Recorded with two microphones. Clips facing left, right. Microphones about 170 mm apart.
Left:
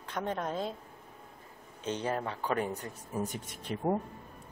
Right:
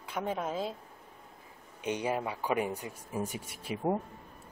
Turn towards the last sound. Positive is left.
turn(degrees=-5)  # may be behind; listen again after turning